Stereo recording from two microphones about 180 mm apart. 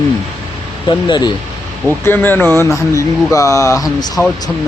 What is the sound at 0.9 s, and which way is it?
Speech, 25° left (ahead or behind).